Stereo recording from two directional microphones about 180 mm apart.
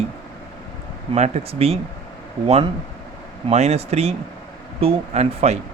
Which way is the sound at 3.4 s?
35° right (ahead or behind).